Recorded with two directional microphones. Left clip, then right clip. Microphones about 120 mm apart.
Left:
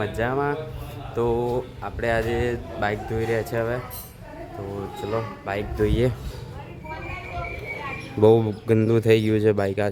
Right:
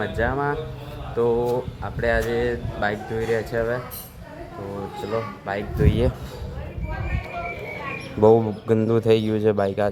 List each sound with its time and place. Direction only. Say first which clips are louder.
0.0 s speech: right 1 dB; 25° left (ahead or behind)
5.5 s speech: left 1 dB; 25° left (ahead or behind)
8.2 s speech: right 1 dB; 30° left (ahead or behind)